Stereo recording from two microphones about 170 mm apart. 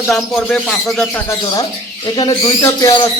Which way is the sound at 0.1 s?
Centre (ahead or behind).